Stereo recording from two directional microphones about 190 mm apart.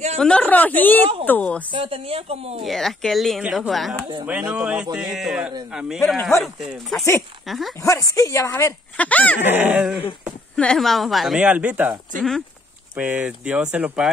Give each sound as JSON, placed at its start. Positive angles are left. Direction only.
{"t": 0.2, "sound": "speech", "side_deg": 5}
{"t": 1.7, "sound": "a woman's voice", "side_deg": -30}
{"t": 2.6, "sound": "speech", "side_deg": 0}
{"t": 7.8, "sound": "speech", "side_deg": 15}
{"t": 9.5, "sound": "speech", "side_deg": -10}
{"t": 10.5, "sound": "speech", "side_deg": 5}